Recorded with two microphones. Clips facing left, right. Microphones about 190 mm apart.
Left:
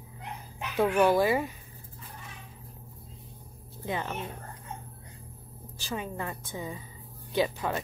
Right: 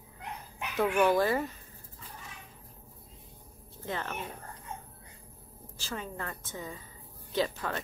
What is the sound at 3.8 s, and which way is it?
Speech, 15° left (ahead or behind).